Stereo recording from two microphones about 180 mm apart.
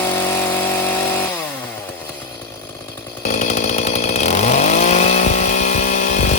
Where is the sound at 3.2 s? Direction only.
45° left (ahead or behind).